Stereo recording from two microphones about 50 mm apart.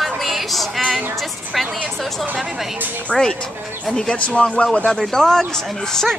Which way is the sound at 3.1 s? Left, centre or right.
Centre.